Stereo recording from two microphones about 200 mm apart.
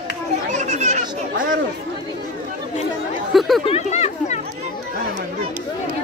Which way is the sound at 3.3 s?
Centre (ahead or behind).